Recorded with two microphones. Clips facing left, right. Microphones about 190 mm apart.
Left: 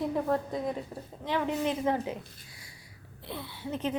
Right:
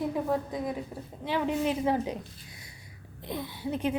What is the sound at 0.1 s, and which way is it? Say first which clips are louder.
A woman's voice: even; 5° right (ahead or behind).